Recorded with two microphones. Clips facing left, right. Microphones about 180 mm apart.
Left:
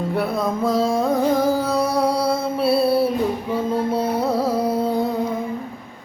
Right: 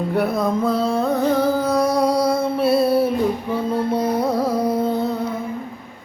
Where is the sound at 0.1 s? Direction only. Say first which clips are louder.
Right 3 dB; 5° left (ahead or behind).